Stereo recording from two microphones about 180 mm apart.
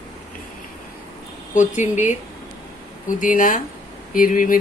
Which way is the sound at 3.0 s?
50° left (ahead or behind).